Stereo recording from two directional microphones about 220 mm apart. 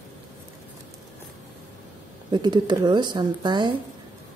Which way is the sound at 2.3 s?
20° right (ahead or behind).